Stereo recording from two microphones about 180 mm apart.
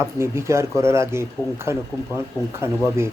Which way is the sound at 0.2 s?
15° right (ahead or behind).